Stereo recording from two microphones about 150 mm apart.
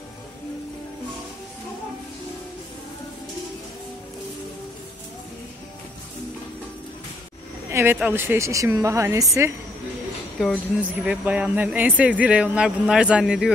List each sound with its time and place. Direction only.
7.7 s speech: 15° right (ahead or behind)
10.8 s speech: 10° right (ahead or behind)